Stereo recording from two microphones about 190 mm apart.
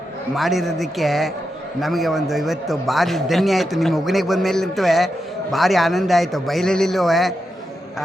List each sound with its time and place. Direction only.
0.3 s a man's voice: centre (ahead or behind)